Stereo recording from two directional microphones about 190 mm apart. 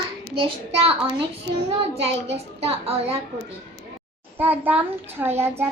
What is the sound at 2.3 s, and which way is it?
Speech, 30° right (ahead or behind).